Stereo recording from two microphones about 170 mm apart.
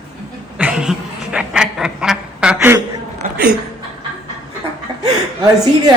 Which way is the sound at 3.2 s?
45° right (ahead or behind).